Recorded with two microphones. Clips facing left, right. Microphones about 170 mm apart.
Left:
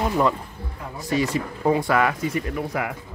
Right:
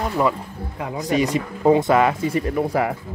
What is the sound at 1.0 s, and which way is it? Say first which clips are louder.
Speech: right 3 dB; 20° right (ahead or behind).